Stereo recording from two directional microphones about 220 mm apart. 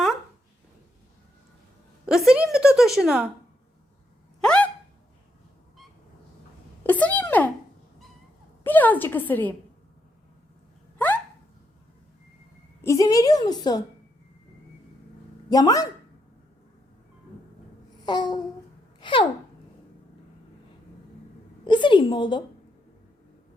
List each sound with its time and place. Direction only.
2.0 s a woman's voice: centre (ahead or behind)
4.4 s a sound: 5° left (ahead or behind)
6.8 s a sound: 5° left (ahead or behind)
8.6 s a woman's voice: 10° left (ahead or behind)
10.9 s hiccup: 10° left (ahead or behind)
12.8 s a woman's voice: 15° left (ahead or behind)
15.4 s speech: 15° left (ahead or behind)
17.9 s babbling: 20° left (ahead or behind)
18.9 s a sound: 20° left (ahead or behind)
21.7 s a woman's voice: 20° left (ahead or behind)